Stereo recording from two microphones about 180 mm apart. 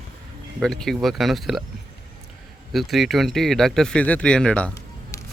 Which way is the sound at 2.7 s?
Centre (ahead or behind).